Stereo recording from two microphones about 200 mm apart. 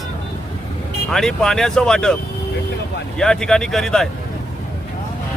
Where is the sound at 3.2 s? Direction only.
5° left (ahead or behind).